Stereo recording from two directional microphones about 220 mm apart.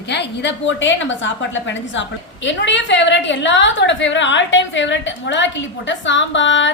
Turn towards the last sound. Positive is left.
turn(degrees=55)  # may be behind; listen again after turning